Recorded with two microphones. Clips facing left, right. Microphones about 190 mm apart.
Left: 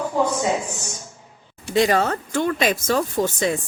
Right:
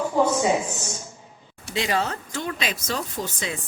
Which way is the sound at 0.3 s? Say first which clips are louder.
Right 1 dB; 15° right (ahead or behind).